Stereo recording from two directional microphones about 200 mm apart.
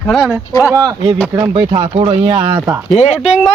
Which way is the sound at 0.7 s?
20° right (ahead or behind).